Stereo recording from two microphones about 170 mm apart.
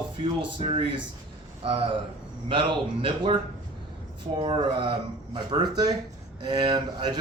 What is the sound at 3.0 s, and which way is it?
Speech, 30° right (ahead or behind).